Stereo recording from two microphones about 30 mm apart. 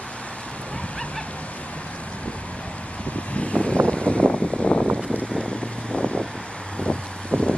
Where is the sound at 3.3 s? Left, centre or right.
Left.